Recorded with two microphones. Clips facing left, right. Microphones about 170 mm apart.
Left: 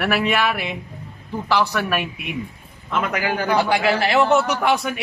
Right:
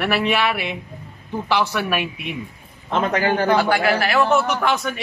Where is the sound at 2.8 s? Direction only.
30° right (ahead or behind).